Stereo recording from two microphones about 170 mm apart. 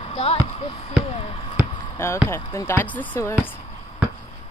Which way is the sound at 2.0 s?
15° left (ahead or behind).